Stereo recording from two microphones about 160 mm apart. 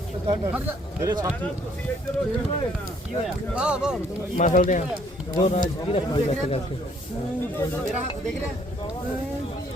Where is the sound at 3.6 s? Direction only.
5° right (ahead or behind).